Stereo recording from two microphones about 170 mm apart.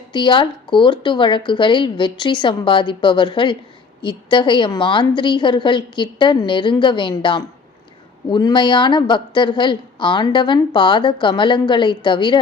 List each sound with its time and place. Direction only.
0.1 s a woman's voice: 30° left (ahead or behind)